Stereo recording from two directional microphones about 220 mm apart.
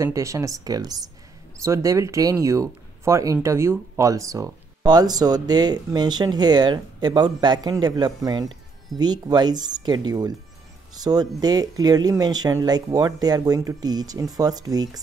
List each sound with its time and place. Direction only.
0.0 s speech: 15° right (ahead or behind)